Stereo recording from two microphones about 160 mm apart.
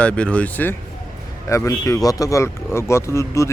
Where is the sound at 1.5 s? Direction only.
20° left (ahead or behind).